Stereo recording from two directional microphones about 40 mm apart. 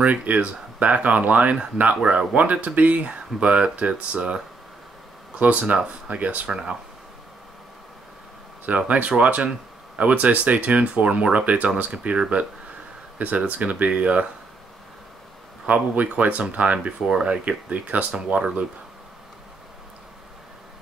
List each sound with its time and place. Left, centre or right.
0.0 s speech: right
5.4 s speech: right
6.5 s speech: right
8.6 s speech: right
15.6 s speech: right
17.0 s speech: centre